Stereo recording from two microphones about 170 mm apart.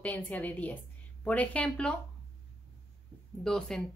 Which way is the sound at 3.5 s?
Centre (ahead or behind).